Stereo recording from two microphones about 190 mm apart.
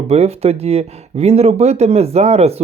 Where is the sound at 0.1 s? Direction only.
35° right (ahead or behind).